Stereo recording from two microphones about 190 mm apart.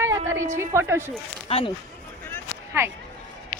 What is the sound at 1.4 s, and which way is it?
Speech, 30° left (ahead or behind).